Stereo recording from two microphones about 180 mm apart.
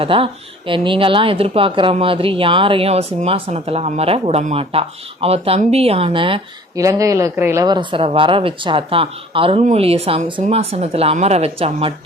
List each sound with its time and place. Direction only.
0.0 s a woman's voice: 30° right (ahead or behind)
6.8 s a woman's voice: 20° right (ahead or behind)